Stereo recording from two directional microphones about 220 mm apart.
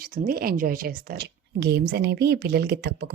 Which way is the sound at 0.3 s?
40° right (ahead or behind).